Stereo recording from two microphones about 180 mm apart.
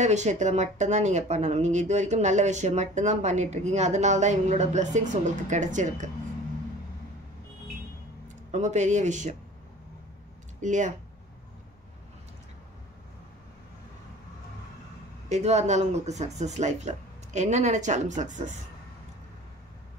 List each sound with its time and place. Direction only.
0.0 s speech: 40° right (ahead or behind)
8.5 s speech: 40° right (ahead or behind)
10.6 s speech: 45° right (ahead or behind)
15.2 s speech: 40° right (ahead or behind)